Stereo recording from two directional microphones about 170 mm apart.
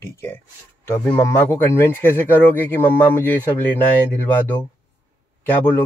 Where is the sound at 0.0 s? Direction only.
15° left (ahead or behind).